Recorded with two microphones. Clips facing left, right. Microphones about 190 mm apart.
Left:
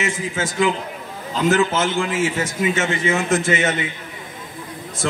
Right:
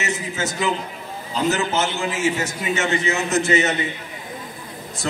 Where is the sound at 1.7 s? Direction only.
50° left (ahead or behind).